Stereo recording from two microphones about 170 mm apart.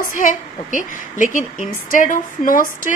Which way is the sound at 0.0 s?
50° left (ahead or behind).